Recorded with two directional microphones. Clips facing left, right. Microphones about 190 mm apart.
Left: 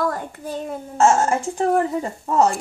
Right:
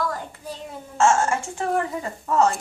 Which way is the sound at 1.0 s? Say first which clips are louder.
Left 3 dB; 35° left (ahead or behind).